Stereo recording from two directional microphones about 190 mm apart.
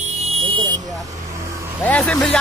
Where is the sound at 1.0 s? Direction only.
15° right (ahead or behind).